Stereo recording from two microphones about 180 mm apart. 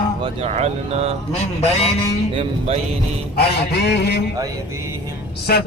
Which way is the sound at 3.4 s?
65° left (ahead or behind).